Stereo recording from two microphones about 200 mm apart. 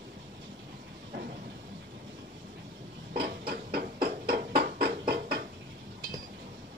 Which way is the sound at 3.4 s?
50° right (ahead or behind).